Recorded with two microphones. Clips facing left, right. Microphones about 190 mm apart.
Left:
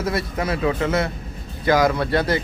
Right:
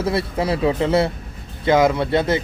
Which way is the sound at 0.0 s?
30° right (ahead or behind).